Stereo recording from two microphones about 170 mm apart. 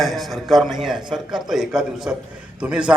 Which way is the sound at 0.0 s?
Centre (ahead or behind).